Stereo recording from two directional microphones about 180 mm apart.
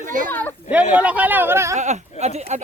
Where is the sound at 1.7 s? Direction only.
40° right (ahead or behind).